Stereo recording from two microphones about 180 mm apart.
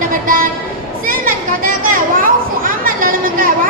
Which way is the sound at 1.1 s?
50° right (ahead or behind).